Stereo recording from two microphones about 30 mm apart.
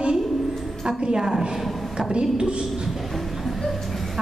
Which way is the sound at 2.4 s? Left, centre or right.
Right.